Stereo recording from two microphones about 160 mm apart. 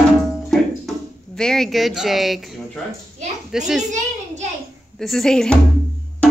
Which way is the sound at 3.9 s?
45° right (ahead or behind).